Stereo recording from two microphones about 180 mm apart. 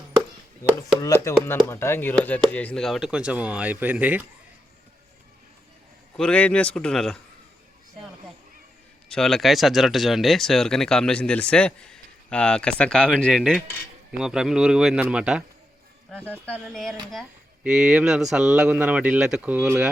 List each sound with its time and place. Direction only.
0.8 s speech: 20° left (ahead or behind); by 4.3 s 10° right (ahead or behind)
6.1 s speech: 5° left (ahead or behind)
9.0 s speech: 5° left (ahead or behind)
16.0 s speech: 5° left (ahead or behind)